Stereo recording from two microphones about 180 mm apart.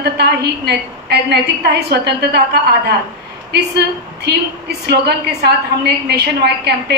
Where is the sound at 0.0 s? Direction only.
65° right (ahead or behind).